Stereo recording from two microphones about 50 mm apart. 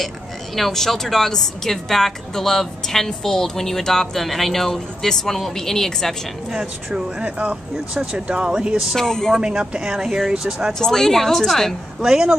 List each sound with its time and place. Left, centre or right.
0.6 s a woman's voice: centre
7.2 s speech: right
8.7 s speech: centre
9.0 s a woman's voice: centre
9.4 s speech: centre
10.7 s a woman's voice: centre
12.0 s speech: centre